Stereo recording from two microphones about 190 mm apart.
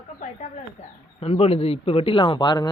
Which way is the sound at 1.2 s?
30° left (ahead or behind).